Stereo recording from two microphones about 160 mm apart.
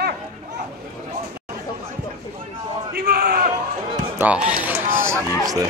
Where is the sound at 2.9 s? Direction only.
75° right (ahead or behind).